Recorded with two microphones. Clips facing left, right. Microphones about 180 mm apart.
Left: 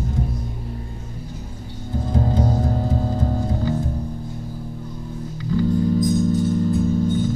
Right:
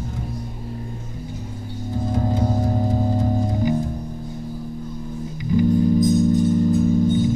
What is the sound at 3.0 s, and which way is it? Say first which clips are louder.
Music: right 2 dB; 15° right (ahead or behind).